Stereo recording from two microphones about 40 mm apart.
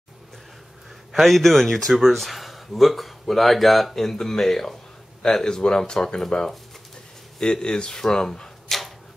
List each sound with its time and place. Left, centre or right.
1.1 s speech: centre
7.3 s speech: centre